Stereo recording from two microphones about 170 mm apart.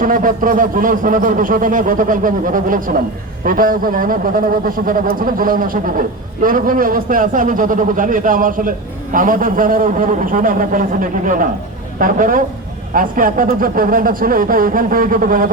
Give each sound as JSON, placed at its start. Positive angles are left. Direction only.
{"t": 0.0, "sound": "a man's voice", "side_deg": -55}